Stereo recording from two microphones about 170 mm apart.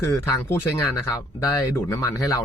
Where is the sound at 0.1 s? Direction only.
15° left (ahead or behind).